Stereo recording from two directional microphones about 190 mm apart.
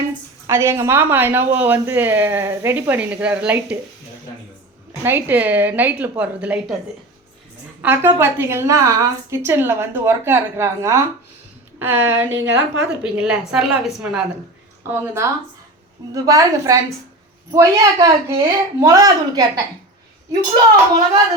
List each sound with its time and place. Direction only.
0.4 s speech: 15° right (ahead or behind)
5.0 s speech: 10° right (ahead or behind)
7.8 s a woman's voice: 10° right (ahead or behind)